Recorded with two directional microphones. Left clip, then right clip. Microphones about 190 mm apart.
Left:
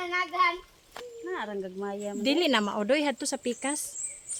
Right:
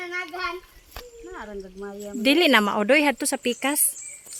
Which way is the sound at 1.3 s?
30° left (ahead or behind).